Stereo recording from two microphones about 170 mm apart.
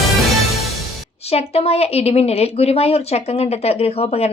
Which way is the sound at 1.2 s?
35° left (ahead or behind).